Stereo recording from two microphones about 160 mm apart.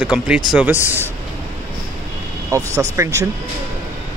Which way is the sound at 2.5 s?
20° right (ahead or behind).